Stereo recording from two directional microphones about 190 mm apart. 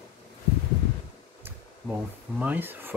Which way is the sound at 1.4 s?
10° right (ahead or behind).